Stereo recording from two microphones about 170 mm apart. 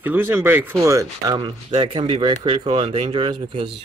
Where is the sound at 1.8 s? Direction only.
30° right (ahead or behind).